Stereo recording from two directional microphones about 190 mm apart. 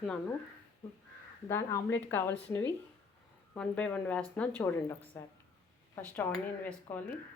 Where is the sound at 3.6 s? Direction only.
5° left (ahead or behind).